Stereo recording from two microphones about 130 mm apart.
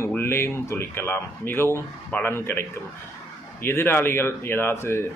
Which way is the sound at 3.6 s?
15° left (ahead or behind).